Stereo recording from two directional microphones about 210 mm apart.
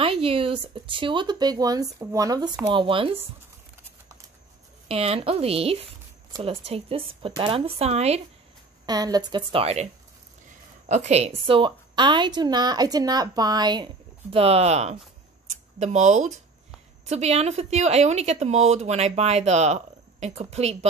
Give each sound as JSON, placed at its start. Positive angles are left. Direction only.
{"t": 0.0, "sound": "a woman's voice", "side_deg": -25}
{"t": 4.8, "sound": "a woman's voice", "side_deg": -30}
{"t": 8.8, "sound": "a woman's voice", "side_deg": -20}
{"t": 10.9, "sound": "a woman's voice", "side_deg": -35}